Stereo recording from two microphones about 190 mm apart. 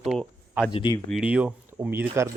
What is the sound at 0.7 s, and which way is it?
Speech, 25° left (ahead or behind).